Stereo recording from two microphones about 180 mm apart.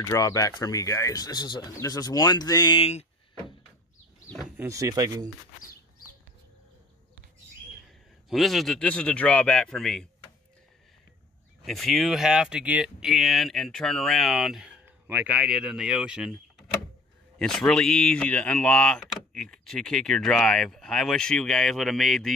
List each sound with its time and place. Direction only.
0.0 s speech: 20° left (ahead or behind)
2.9 s a sound: 35° left (ahead or behind)
4.6 s speech: 15° right (ahead or behind)
8.3 s speech: centre (ahead or behind)
11.6 s speech: centre (ahead or behind)